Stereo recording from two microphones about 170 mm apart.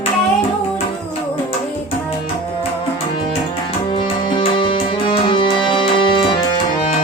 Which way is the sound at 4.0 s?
30° left (ahead or behind).